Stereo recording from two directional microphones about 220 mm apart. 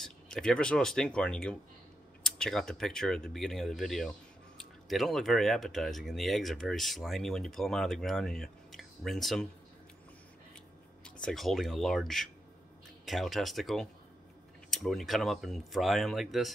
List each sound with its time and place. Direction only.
0.0 s speech: 5° left (ahead or behind)
11.1 s speech: 5° left (ahead or behind)